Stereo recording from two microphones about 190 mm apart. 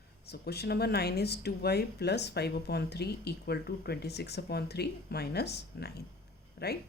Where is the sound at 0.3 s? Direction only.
55° left (ahead or behind).